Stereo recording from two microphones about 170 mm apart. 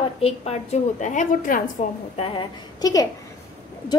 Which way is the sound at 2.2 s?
30° left (ahead or behind).